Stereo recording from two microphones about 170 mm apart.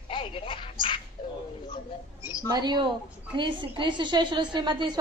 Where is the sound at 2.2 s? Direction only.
20° left (ahead or behind).